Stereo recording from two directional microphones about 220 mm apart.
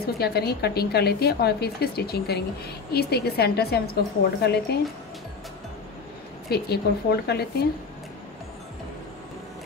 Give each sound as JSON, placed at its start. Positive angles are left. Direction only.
{"t": 0.2, "sound": "a woman's voice", "side_deg": 45}
{"t": 6.5, "sound": "a woman's voice", "side_deg": 45}